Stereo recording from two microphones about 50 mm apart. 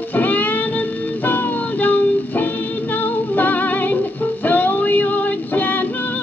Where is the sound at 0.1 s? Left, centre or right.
Left.